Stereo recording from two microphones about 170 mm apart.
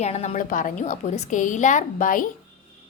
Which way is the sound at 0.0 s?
40° left (ahead or behind).